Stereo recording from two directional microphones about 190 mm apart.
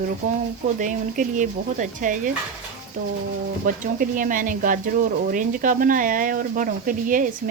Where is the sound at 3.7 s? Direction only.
45° right (ahead or behind).